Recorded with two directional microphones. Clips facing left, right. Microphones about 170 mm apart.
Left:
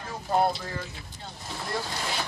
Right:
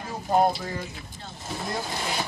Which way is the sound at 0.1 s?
15° right (ahead or behind).